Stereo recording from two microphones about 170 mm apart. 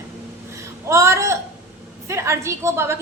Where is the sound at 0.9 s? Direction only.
15° right (ahead or behind).